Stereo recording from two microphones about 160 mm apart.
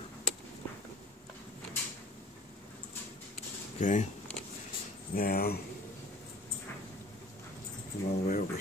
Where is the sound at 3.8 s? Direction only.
50° left (ahead or behind).